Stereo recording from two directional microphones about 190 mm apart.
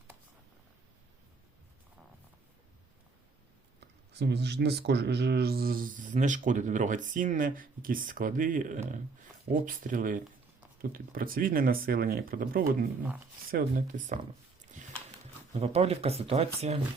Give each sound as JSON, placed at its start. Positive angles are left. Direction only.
{"t": 3.8, "sound": "speech", "side_deg": -60}
{"t": 15.5, "sound": "speech", "side_deg": -35}